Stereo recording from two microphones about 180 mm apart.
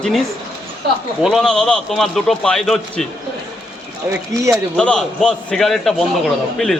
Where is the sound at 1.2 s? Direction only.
Centre (ahead or behind).